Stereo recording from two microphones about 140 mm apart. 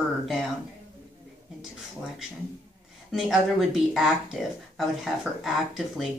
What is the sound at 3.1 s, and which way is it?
Speech, centre (ahead or behind).